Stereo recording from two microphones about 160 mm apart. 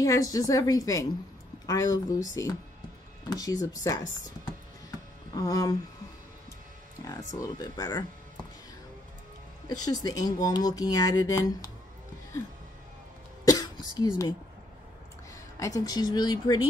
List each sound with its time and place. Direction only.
0.0 s speech: 20° left (ahead or behind)
3.3 s speech: 25° left (ahead or behind)
5.3 s speech: 20° left (ahead or behind)
7.3 s speech: 25° left (ahead or behind)
9.7 s speech: 25° left (ahead or behind)
13.5 s throat clearing: 25° left (ahead or behind)
15.6 s speech: 20° left (ahead or behind)